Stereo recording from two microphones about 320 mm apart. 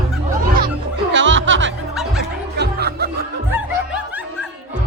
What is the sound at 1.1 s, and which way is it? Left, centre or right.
Music, right.